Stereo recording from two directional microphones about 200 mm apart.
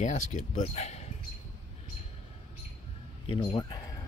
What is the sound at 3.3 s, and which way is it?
Speech, 25° left (ahead or behind).